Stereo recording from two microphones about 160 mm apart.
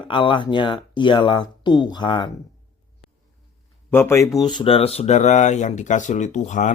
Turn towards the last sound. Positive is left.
turn(degrees=50)  # may be behind; listen again after turning